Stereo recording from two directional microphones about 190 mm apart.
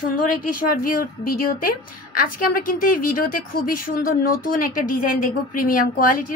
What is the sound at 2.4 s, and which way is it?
Speech, 45° left (ahead or behind).